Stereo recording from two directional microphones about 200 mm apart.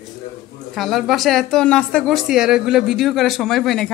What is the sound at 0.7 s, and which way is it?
A woman's voice, centre (ahead or behind).